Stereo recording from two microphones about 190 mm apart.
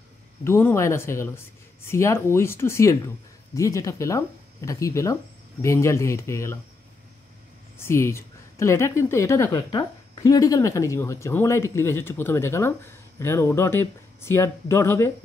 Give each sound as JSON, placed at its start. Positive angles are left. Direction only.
{"t": 0.4, "sound": "a woman's voice", "side_deg": 10}
{"t": 7.8, "sound": "a woman's voice", "side_deg": 15}